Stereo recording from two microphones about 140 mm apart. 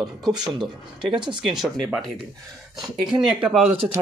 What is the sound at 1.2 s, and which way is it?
Speech, 35° right (ahead or behind).